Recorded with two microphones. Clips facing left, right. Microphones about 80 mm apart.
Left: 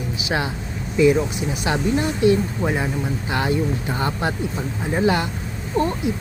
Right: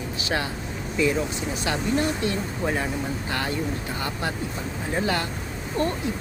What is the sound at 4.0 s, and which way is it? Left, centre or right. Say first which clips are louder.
Speech: left 6 dB; left.